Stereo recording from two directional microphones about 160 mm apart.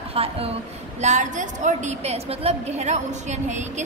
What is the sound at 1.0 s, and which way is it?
A woman's voice, 50° right (ahead or behind).